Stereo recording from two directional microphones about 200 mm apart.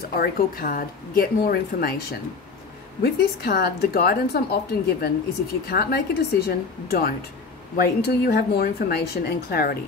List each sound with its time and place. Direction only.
0.1 s a woman's voice: 50° left (ahead or behind)